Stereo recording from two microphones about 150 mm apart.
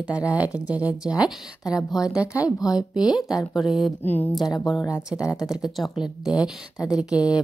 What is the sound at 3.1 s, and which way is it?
Speech, 25° left (ahead or behind).